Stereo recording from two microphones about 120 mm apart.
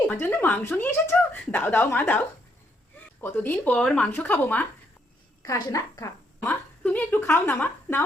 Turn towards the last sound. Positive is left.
turn(degrees=15)  # may be behind; listen again after turning